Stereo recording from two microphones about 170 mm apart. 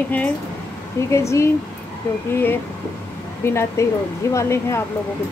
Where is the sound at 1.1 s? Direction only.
15° left (ahead or behind).